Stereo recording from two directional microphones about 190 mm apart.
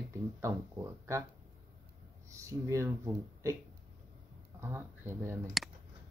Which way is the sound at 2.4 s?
15° right (ahead or behind).